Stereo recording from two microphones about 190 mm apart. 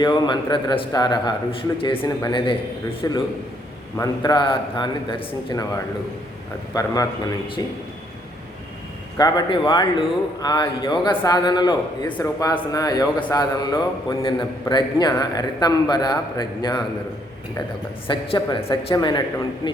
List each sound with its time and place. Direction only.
0.0 s a man's voice: 20° left (ahead or behind)
9.1 s a man's voice: 20° left (ahead or behind)
18.1 s a man's voice: 25° left (ahead or behind)